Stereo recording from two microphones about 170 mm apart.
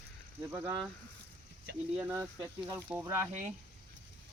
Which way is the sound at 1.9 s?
15° right (ahead or behind).